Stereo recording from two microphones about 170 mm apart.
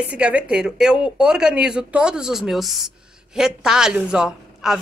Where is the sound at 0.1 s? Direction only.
5° right (ahead or behind).